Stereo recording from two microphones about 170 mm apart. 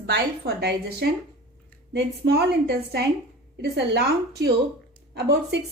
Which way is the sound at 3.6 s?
75° right (ahead or behind).